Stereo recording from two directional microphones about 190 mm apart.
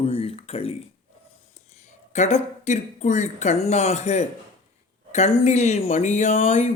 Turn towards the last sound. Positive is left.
turn(degrees=40)  # may be behind; listen again after turning